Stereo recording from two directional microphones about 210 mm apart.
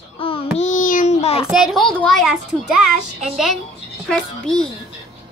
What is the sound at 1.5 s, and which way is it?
A woman's voice, centre (ahead or behind).